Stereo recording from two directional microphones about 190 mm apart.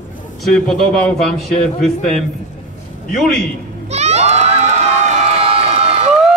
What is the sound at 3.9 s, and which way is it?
Crowd, 35° right (ahead or behind).